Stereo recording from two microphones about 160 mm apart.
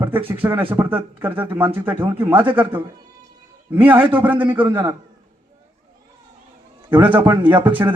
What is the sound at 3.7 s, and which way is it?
Speech, 10° right (ahead or behind).